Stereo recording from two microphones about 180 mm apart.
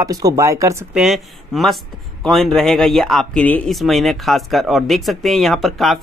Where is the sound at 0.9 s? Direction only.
Centre (ahead or behind).